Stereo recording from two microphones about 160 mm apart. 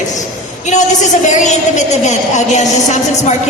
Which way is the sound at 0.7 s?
50° left (ahead or behind).